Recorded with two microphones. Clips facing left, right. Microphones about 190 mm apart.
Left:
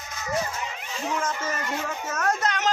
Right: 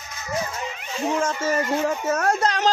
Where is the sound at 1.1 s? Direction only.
30° right (ahead or behind).